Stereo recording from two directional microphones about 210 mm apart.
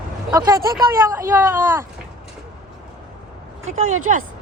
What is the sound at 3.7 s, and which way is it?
Speech, 35° right (ahead or behind).